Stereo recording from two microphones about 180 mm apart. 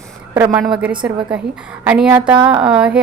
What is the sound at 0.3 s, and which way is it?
A woman's voice, 15° right (ahead or behind).